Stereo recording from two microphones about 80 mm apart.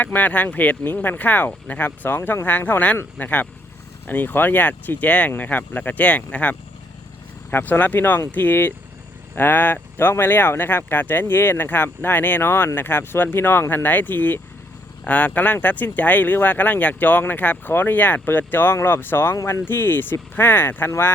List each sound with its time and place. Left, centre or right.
0.0 s speech: left
19.4 s speech: left
19.6 s speech: left